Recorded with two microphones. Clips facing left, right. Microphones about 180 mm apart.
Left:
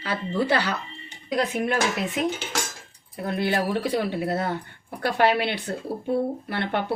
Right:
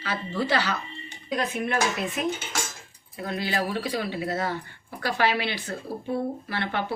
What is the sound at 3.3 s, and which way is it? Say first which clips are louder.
A woman's voice: left 4 dB; 55° left (ahead or behind).